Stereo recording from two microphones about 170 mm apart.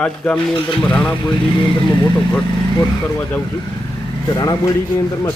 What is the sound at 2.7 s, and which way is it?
Speech, 15° left (ahead or behind).